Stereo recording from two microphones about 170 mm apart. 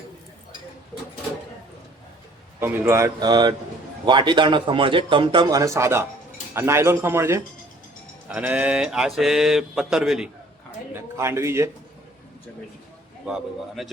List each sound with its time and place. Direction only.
2.6 s a man's voice: 15° right (ahead or behind)
8.3 s mantra: 10° right (ahead or behind)
10.9 s speech: 15° right (ahead or behind)
13.2 s mantra: 5° right (ahead or behind)